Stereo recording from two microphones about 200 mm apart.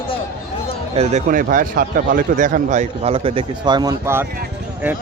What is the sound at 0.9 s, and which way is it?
Speech, 40° right (ahead or behind).